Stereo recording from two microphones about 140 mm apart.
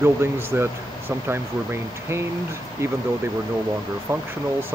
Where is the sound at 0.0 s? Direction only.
15° right (ahead or behind).